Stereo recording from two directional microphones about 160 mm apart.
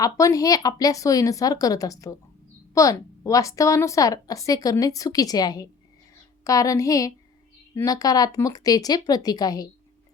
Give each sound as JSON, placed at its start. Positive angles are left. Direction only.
{"t": 0.0, "sound": "a woman's voice", "side_deg": 20}